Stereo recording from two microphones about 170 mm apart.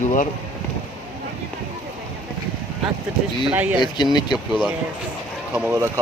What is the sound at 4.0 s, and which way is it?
Speech, 25° left (ahead or behind).